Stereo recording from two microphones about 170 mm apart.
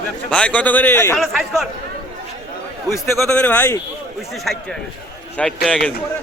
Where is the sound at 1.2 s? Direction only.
Centre (ahead or behind).